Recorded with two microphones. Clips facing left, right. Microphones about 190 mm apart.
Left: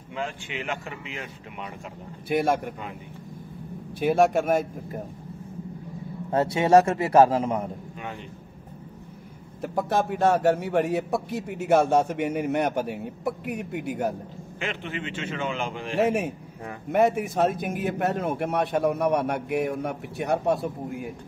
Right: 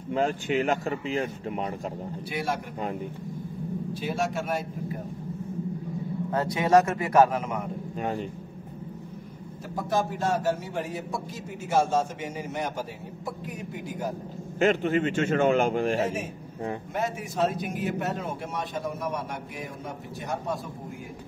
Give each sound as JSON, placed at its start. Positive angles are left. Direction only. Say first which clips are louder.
{"t": 0.1, "sound": "speech", "louder": "right 8 dB", "side_deg": -40}
{"t": 2.2, "sound": "a man's voice", "louder": "left 8 dB", "side_deg": 50}
{"t": 4.0, "sound": "a man's voice", "louder": "left 10 dB", "side_deg": 55}
{"t": 6.3, "sound": "a man's voice", "louder": "left 3 dB", "side_deg": 25}
{"t": 9.8, "sound": "a man's voice", "louder": "left 3 dB", "side_deg": 65}
{"t": 14.6, "sound": "speech", "louder": "right 10 dB", "side_deg": -45}
{"t": 16.0, "sound": "a man's voice", "louder": "left 5 dB", "side_deg": 65}